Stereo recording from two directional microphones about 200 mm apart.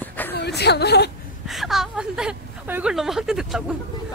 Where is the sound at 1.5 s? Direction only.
Centre (ahead or behind).